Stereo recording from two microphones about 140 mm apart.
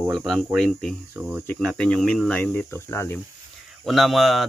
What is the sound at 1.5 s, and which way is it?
Speech, 5° left (ahead or behind).